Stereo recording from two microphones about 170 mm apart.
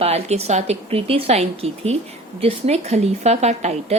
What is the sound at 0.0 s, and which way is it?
A woman's voice, 35° right (ahead or behind).